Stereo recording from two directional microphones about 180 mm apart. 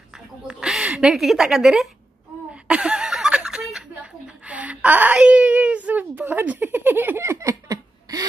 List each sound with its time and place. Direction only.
0.5 s speech: 5° right (ahead or behind)
2.5 s chuckle: 5° right (ahead or behind)